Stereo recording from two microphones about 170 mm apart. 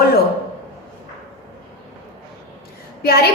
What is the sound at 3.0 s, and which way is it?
Speech, 65° left (ahead or behind).